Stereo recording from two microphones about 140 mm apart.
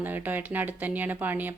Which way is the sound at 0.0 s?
15° right (ahead or behind).